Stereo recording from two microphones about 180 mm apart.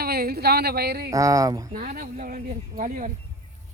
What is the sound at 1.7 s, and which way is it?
Speech, 50° right (ahead or behind).